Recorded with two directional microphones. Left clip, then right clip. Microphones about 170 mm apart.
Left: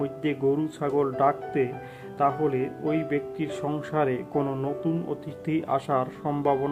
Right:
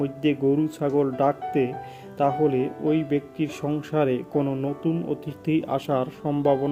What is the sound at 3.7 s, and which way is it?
Speech, 45° right (ahead or behind).